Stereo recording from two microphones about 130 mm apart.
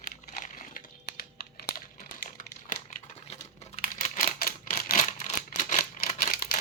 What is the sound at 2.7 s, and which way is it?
Crumpling, 60° left (ahead or behind).